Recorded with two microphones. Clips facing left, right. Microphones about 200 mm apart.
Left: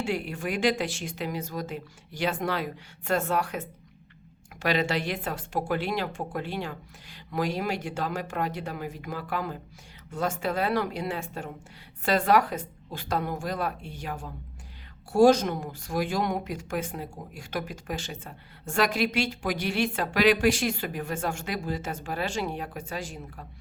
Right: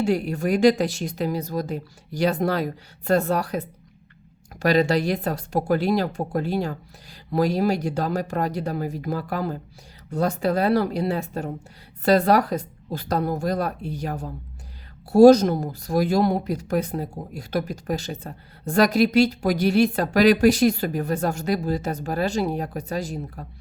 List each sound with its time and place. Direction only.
0.0 s speech: 40° right (ahead or behind)